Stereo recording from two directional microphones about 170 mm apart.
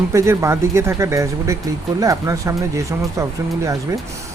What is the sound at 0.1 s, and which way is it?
Speech, 15° right (ahead or behind).